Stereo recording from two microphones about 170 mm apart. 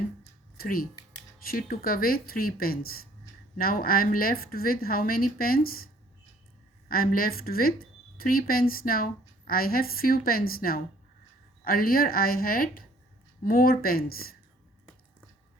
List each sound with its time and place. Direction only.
0.5 s a woman's voice: 60° left (ahead or behind)